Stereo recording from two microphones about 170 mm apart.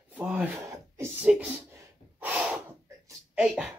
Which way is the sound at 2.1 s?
10° right (ahead or behind).